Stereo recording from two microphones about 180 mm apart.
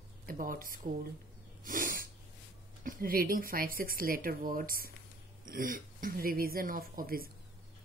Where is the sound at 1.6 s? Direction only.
50° right (ahead or behind).